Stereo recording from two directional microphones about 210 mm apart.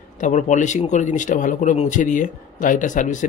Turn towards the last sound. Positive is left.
turn(degrees=35)  # may be behind; listen again after turning